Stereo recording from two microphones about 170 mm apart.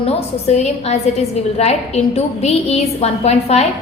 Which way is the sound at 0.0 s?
40° left (ahead or behind).